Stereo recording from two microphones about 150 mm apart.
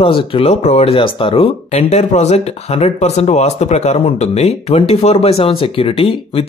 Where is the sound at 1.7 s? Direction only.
50° left (ahead or behind).